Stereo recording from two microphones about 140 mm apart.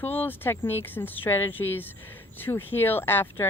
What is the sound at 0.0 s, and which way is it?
Speech, 15° left (ahead or behind).